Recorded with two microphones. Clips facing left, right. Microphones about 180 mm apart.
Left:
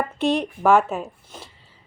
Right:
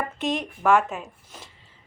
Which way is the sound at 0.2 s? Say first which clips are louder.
Left 7 dB; 35° left (ahead or behind).